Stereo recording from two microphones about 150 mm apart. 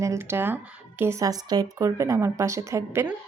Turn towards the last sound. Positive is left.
turn(degrees=-20)  # may be behind; listen again after turning